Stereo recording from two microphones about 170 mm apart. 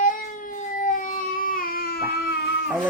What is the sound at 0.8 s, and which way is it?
Baby cry, 50° left (ahead or behind).